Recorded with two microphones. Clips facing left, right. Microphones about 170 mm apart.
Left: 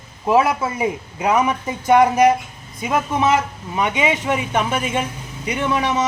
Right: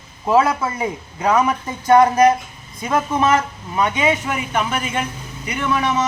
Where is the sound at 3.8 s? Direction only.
20° left (ahead or behind).